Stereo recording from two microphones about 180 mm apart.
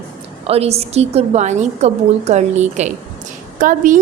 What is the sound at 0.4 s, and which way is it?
A woman's voice, 35° right (ahead or behind).